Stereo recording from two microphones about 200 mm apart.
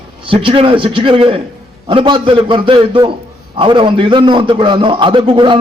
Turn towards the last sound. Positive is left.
turn(degrees=-25)  # may be behind; listen again after turning